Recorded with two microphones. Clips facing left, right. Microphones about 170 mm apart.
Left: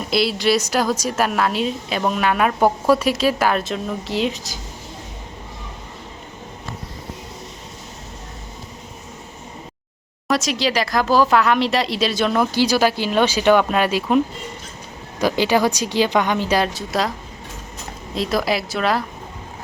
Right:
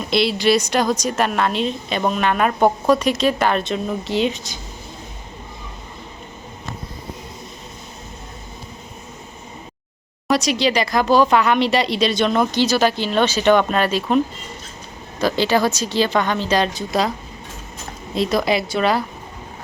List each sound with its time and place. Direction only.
0.1 s speech: centre (ahead or behind)
10.2 s speech: centre (ahead or behind)
15.2 s speech: 10° left (ahead or behind)
18.1 s speech: centre (ahead or behind)